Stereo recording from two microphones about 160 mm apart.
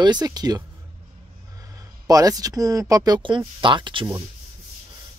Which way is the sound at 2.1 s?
20° right (ahead or behind).